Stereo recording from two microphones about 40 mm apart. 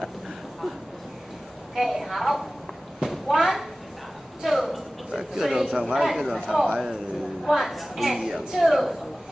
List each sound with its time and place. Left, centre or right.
1.8 s a woman's voice: centre
5.7 s speech: centre
5.9 s a woman's voice: centre